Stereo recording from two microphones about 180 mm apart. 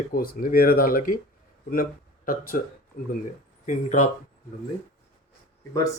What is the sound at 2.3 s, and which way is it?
Speech, 50° left (ahead or behind).